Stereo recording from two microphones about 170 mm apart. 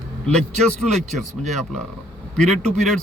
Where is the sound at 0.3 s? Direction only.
5° left (ahead or behind).